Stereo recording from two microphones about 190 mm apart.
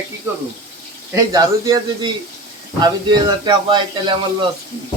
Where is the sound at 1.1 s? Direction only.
20° right (ahead or behind).